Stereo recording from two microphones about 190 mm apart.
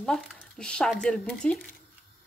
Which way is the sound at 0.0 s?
5° left (ahead or behind).